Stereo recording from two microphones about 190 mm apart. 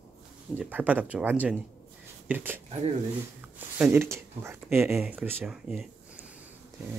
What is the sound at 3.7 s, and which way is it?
Speech, 10° right (ahead or behind).